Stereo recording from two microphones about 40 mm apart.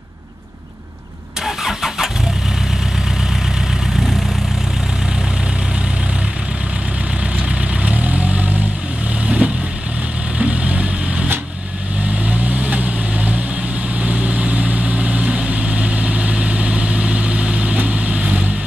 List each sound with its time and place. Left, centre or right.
1.4 s vehicle: centre
7.8 s vehicle: right
12.3 s vehicle: right